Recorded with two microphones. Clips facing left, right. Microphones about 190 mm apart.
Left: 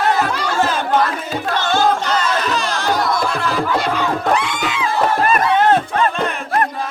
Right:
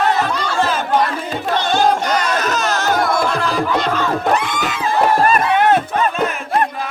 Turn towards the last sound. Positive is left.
turn(degrees=-10)  # may be behind; listen again after turning